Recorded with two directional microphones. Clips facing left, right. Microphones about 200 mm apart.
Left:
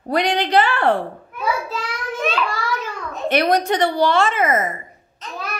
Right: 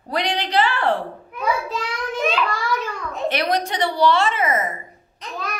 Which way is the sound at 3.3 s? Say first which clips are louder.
Left 6 dB; 50° left (ahead or behind).